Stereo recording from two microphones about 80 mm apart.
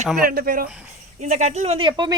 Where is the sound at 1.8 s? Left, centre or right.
Right.